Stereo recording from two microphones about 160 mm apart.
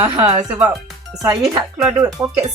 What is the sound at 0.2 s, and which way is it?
Speech, 40° right (ahead or behind).